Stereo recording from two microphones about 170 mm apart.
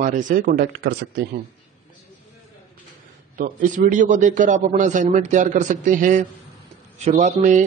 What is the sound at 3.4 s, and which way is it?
A man's voice, 50° right (ahead or behind).